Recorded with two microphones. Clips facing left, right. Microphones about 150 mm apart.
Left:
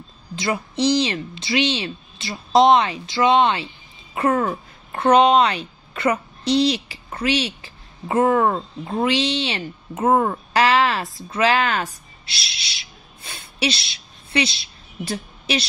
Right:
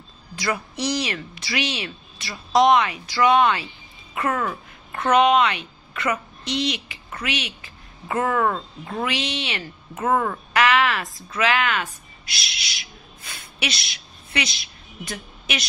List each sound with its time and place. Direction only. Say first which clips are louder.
0.4 s speech: left 4 dB; 25° left (ahead or behind)